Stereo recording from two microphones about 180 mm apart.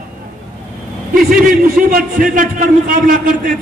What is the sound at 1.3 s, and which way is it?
A man's voice, 50° right (ahead or behind).